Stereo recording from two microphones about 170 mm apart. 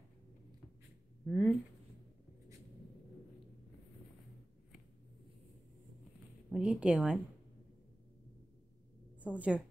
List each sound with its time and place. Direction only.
1.2 s speech: 5° right (ahead or behind)
6.5 s a woman's voice: 5° right (ahead or behind)
9.2 s a woman's voice: 10° right (ahead or behind)